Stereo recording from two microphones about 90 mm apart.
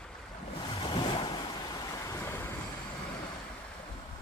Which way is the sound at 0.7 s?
65° left (ahead or behind).